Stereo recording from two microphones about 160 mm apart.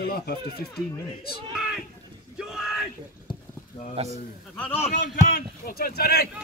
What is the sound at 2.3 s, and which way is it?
Yell, 5° right (ahead or behind).